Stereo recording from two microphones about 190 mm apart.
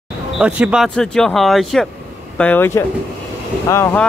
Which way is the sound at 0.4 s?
5° right (ahead or behind).